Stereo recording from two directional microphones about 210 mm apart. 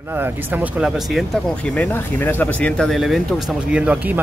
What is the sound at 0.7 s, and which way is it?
Speech, centre (ahead or behind).